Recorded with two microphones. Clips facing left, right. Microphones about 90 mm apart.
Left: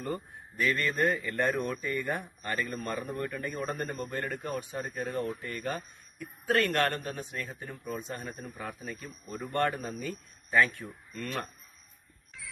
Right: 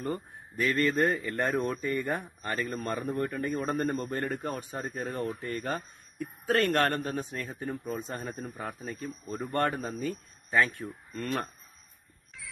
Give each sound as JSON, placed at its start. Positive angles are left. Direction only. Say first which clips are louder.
{"t": 0.0, "sound": "speech", "louder": "right 2 dB", "side_deg": -35}